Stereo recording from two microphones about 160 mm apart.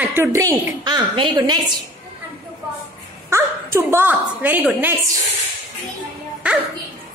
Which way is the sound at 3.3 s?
15° right (ahead or behind).